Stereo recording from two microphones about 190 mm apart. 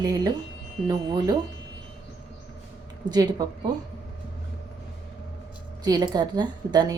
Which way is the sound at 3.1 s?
20° right (ahead or behind).